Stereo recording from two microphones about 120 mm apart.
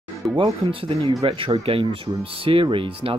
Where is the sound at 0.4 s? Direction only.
45° right (ahead or behind).